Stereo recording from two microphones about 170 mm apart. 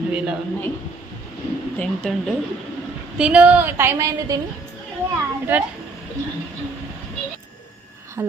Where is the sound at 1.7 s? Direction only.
5° left (ahead or behind); by 4.4 s 20° right (ahead or behind).